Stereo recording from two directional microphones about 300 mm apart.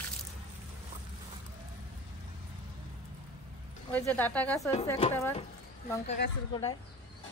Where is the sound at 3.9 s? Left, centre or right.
Centre.